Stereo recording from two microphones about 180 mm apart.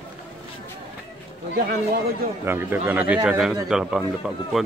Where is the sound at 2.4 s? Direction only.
10° right (ahead or behind).